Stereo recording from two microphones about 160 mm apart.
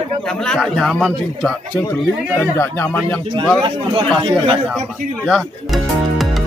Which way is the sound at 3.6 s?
30° right (ahead or behind).